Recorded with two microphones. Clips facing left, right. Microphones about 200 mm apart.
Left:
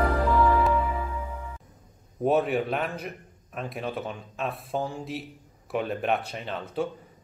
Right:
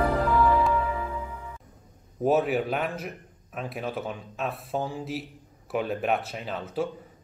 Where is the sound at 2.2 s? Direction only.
Centre (ahead or behind).